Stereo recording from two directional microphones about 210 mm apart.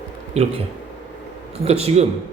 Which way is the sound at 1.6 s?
30° right (ahead or behind).